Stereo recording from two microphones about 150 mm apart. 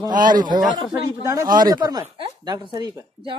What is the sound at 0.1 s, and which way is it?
Speech, 65° right (ahead or behind).